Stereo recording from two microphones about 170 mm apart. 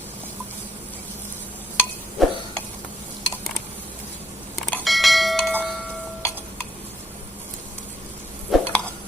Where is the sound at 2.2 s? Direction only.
Centre (ahead or behind).